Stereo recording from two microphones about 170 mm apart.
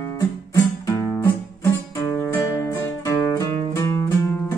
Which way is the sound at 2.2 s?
15° left (ahead or behind).